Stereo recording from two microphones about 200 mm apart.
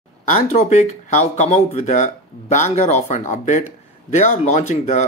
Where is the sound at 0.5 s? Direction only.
35° left (ahead or behind).